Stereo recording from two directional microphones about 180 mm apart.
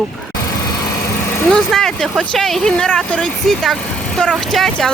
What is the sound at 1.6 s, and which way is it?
Speech, centre (ahead or behind).